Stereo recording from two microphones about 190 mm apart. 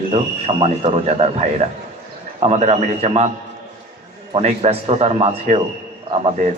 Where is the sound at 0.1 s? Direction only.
30° right (ahead or behind).